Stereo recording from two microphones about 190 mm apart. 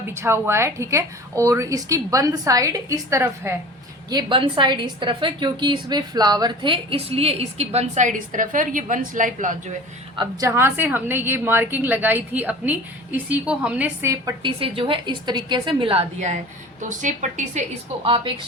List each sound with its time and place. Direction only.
0.0 s a woman's voice: 15° right (ahead or behind); by 9.6 s 45° right (ahead or behind)
10.2 s a woman's voice: 15° right (ahead or behind)
14.4 s a woman's voice: 25° right (ahead or behind)
18.0 s a woman's voice: 30° right (ahead or behind)